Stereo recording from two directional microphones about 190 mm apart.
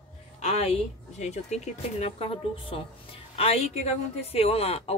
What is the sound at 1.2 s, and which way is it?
Speech, 35° left (ahead or behind).